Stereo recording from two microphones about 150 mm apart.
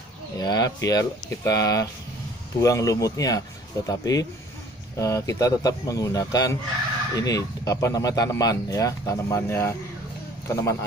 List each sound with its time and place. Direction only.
0.4 s speech: 25° left (ahead or behind)